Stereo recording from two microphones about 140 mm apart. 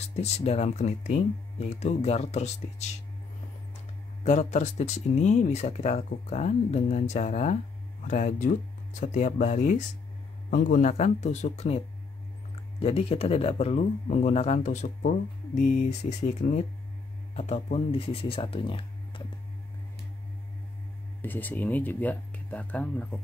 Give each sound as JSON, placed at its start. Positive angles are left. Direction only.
{"t": 0.0, "sound": "speech", "side_deg": 50}
{"t": 4.2, "sound": "speech", "side_deg": 55}
{"t": 12.8, "sound": "speech", "side_deg": 45}
{"t": 21.2, "sound": "speech", "side_deg": 15}